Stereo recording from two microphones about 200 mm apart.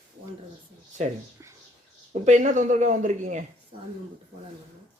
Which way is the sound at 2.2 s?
40° right (ahead or behind).